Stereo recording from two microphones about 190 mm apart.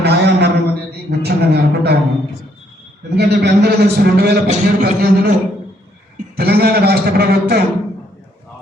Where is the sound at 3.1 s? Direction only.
60° right (ahead or behind).